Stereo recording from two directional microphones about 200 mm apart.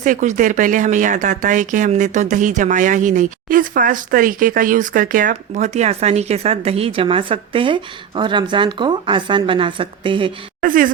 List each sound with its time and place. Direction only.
0.0 s speech: 40° right (ahead or behind)
10.6 s speech: 45° right (ahead or behind)